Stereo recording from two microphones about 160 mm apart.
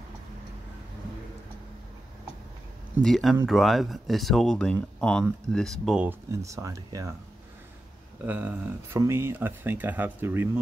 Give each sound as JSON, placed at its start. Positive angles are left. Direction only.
{"t": 3.0, "sound": "speech", "side_deg": 0}
{"t": 6.0, "sound": "speech", "side_deg": -20}
{"t": 8.3, "sound": "speech", "side_deg": -10}